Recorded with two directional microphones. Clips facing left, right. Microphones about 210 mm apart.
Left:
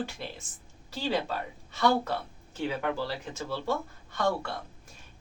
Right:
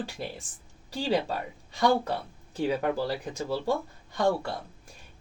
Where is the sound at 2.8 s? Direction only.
40° right (ahead or behind).